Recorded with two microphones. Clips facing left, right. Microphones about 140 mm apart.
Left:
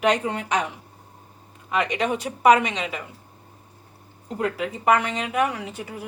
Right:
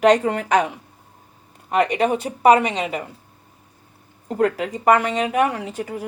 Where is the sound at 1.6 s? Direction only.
35° right (ahead or behind).